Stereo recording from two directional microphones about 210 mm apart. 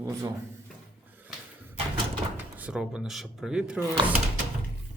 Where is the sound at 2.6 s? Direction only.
5° right (ahead or behind).